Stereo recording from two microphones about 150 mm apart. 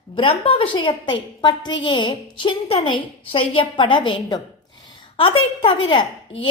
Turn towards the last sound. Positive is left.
turn(degrees=35)  # may be behind; listen again after turning